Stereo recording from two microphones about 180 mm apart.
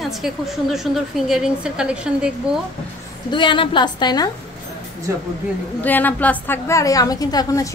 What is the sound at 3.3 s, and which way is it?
Speech, 25° left (ahead or behind).